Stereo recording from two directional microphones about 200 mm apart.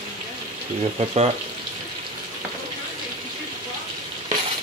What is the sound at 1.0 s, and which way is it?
Speech, 30° right (ahead or behind).